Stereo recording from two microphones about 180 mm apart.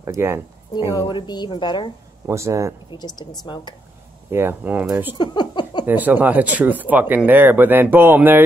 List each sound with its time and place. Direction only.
0.0 s speech: 15° right (ahead or behind)
0.9 s a woman's voice: 25° left (ahead or behind)
2.2 s speech: 15° right (ahead or behind)
2.9 s a woman's voice: 25° left (ahead or behind)
4.3 s speech: 10° right (ahead or behind)
5.1 s a sound: 25° left (ahead or behind)
5.9 s speech: 10° right (ahead or behind)